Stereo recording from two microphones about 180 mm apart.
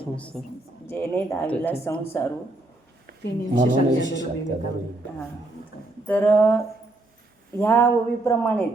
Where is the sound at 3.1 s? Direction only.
60° right (ahead or behind).